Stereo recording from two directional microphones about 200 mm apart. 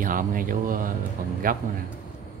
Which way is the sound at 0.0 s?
45° right (ahead or behind).